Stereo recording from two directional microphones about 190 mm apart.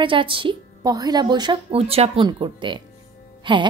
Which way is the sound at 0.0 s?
25° right (ahead or behind).